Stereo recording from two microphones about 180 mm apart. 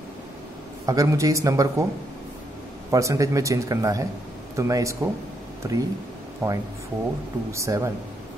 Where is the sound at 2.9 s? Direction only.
20° right (ahead or behind).